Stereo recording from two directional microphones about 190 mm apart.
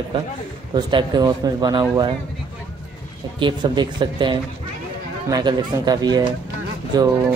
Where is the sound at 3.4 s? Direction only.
25° right (ahead or behind).